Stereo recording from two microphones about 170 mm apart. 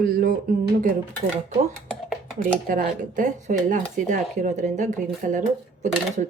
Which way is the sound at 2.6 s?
55° right (ahead or behind).